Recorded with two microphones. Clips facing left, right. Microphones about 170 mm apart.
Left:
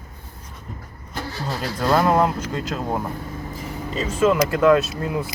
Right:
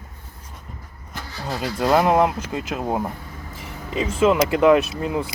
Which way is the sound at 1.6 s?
15° right (ahead or behind).